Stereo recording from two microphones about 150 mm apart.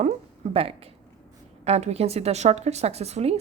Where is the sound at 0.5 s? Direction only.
40° right (ahead or behind).